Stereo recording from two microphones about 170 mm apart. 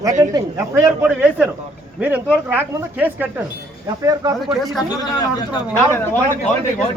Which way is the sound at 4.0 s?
20° right (ahead or behind).